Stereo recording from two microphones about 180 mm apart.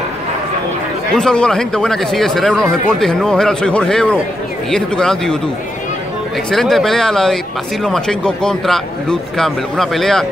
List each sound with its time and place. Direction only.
1.1 s speech: 5° left (ahead or behind)
6.5 s speech: centre (ahead or behind)